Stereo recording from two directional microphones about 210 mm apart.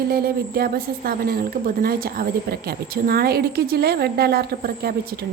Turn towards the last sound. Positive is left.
turn(degrees=-45)  # may be behind; listen again after turning